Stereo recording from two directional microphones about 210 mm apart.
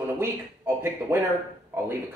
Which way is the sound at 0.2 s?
10° right (ahead or behind).